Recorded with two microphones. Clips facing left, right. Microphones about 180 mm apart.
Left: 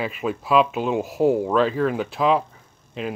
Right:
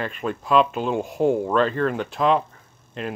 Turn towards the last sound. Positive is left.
turn(degrees=0)  # may be behind; listen again after turning